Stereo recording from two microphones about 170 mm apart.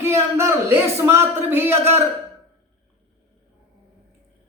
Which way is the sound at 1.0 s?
15° right (ahead or behind).